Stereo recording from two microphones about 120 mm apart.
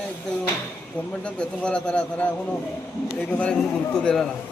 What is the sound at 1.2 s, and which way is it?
Speech, 10° left (ahead or behind).